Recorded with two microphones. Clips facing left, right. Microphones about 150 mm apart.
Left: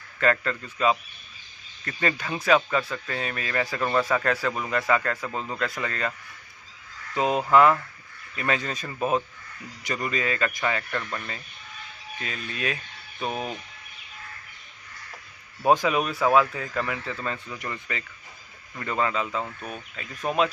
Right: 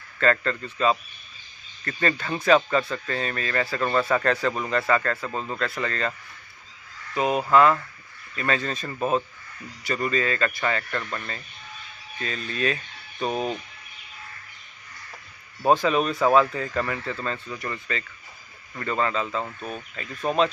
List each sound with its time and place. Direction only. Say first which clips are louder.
0.2 s speech: right 1 dB; 10° left (ahead or behind)
7.2 s speech: even; 20° left (ahead or behind); by 13.5 s 5° left (ahead or behind)
15.6 s speech: right 1 dB; 15° left (ahead or behind)